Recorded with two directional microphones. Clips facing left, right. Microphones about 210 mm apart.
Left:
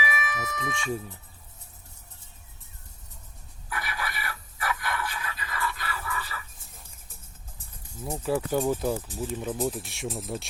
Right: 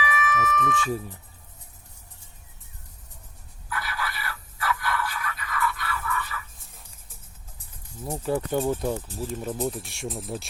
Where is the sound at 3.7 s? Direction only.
15° left (ahead or behind).